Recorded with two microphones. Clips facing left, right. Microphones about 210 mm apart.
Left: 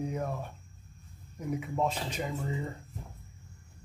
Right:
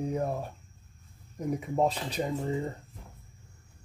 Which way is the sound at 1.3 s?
35° right (ahead or behind).